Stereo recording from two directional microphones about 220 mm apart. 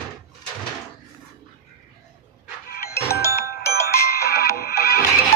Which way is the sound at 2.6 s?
45° left (ahead or behind).